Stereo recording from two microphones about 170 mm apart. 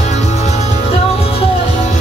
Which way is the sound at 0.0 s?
40° left (ahead or behind).